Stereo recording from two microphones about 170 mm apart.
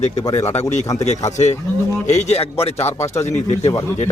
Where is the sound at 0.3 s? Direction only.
20° left (ahead or behind).